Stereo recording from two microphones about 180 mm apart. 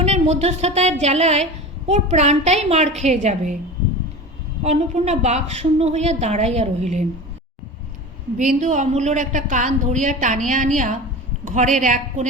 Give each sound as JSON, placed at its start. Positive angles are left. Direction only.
{"t": 0.0, "sound": "a woman's voice", "side_deg": -40}
{"t": 4.6, "sound": "a woman's voice", "side_deg": -40}
{"t": 8.4, "sound": "speech", "side_deg": -45}